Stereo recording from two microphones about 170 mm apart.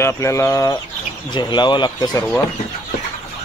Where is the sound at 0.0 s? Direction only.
15° left (ahead or behind).